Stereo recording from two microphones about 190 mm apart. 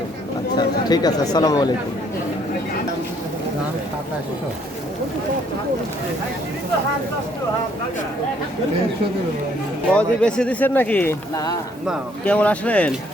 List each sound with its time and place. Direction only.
0.5 s speech: 20° left (ahead or behind)
9.9 s speech: 5° left (ahead or behind)